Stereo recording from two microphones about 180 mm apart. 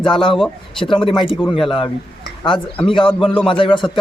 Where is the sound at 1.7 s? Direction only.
25° left (ahead or behind).